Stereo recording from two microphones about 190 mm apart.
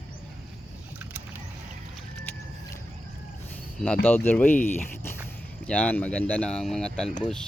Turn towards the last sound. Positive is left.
turn(degrees=5)  # may be behind; listen again after turning